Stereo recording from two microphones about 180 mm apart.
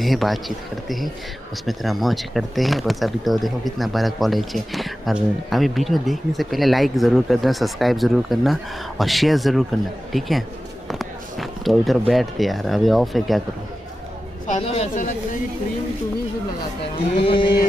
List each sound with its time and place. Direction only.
0.0 s speech: centre (ahead or behind)
10.9 s basketball bounce: centre (ahead or behind)
12.1 s speech: centre (ahead or behind)
14.5 s speech: 35° left (ahead or behind)
17.2 s mantra: 30° left (ahead or behind)